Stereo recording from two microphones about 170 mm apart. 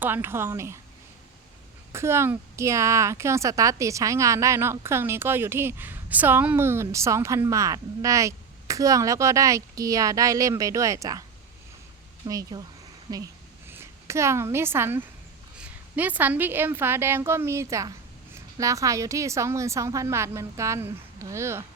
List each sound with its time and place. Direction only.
0.0 s a woman's voice: 15° right (ahead or behind)
1.9 s a woman's voice: 15° right (ahead or behind)
13.1 s a sound: 20° right (ahead or behind)
15.5 s a woman's voice: 10° right (ahead or behind)